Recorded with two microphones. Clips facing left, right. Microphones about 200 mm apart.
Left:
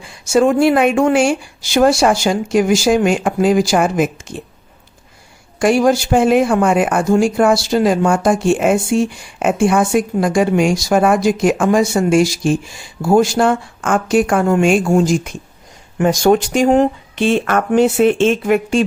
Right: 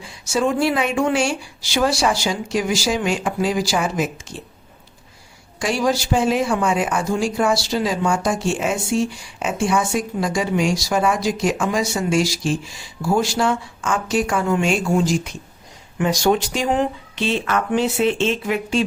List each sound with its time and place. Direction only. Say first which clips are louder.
0.0 s speech: left 7 dB; 55° left (ahead or behind)
5.5 s speech: left 8 dB; 55° left (ahead or behind)